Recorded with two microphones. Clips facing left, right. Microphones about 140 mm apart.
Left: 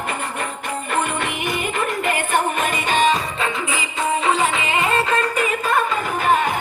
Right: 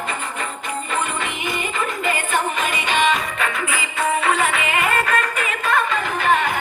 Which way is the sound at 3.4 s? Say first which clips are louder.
Even; 20° left (ahead or behind).